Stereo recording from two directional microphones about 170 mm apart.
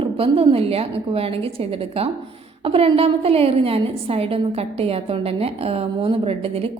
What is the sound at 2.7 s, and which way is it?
A woman's voice, 35° right (ahead or behind).